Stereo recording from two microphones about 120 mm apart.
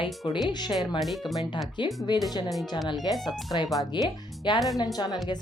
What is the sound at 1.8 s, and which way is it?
Speech, 40° left (ahead or behind).